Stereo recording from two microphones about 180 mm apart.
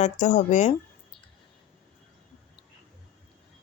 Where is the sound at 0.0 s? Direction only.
40° left (ahead or behind).